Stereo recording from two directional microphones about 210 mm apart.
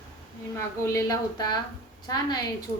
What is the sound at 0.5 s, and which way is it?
A woman's voice, 15° left (ahead or behind).